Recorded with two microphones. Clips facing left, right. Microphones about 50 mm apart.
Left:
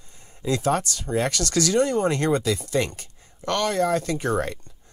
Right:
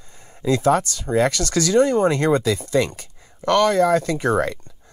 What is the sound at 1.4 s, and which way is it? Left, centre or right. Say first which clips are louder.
Speech: right 4 dB; right.